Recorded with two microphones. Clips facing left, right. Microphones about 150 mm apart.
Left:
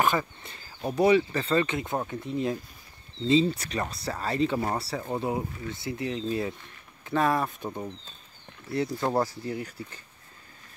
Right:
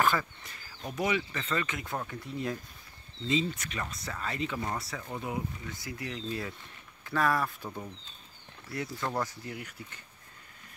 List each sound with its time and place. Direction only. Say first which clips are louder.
0.0 s speech: left 3 dB; 20° left (ahead or behind)
3.3 s speech: left 8 dB; 35° left (ahead or behind)
8.7 s speech: left 7 dB; 30° left (ahead or behind)